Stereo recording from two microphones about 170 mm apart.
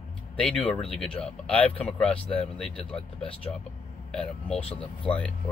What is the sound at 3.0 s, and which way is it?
Speech, 30° left (ahead or behind).